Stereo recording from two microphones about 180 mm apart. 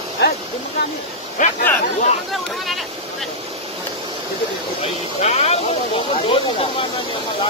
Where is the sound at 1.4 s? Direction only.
45° left (ahead or behind).